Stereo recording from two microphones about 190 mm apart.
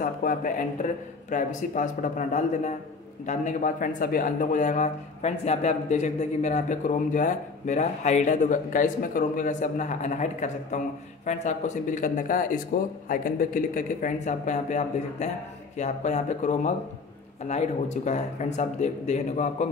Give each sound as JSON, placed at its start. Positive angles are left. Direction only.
{"t": 0.0, "sound": "speech", "side_deg": 45}